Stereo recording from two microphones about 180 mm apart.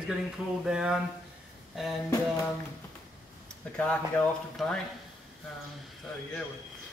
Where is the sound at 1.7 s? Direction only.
Centre (ahead or behind).